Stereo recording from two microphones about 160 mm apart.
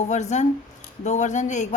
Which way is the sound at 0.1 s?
45° left (ahead or behind).